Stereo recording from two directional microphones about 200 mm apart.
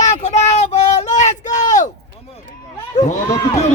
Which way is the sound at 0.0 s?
35° left (ahead or behind).